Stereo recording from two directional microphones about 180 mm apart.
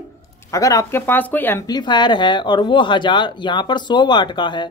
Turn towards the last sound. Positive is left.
turn(degrees=25)  # may be behind; listen again after turning